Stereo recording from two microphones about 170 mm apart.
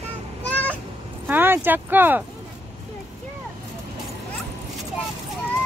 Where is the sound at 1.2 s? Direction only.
10° right (ahead or behind).